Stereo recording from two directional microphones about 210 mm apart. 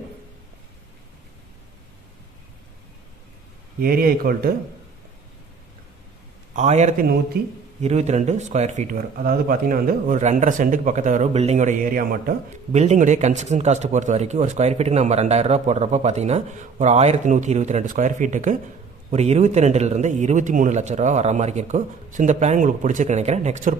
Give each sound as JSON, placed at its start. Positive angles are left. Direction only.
{"t": 3.8, "sound": "speech", "side_deg": -45}
{"t": 6.5, "sound": "speech", "side_deg": -30}
{"t": 7.3, "sound": "speech", "side_deg": -50}
{"t": 7.8, "sound": "speech", "side_deg": -30}